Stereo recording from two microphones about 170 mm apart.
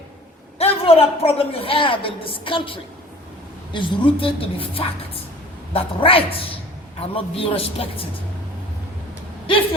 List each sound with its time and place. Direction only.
0.6 s a man's voice: 35° left (ahead or behind)